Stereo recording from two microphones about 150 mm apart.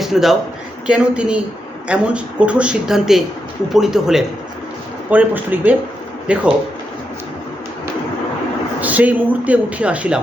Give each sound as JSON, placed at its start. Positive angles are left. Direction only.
{"t": 0.0, "sound": "a man's voice", "side_deg": 0}
{"t": 8.8, "sound": "speech", "side_deg": -10}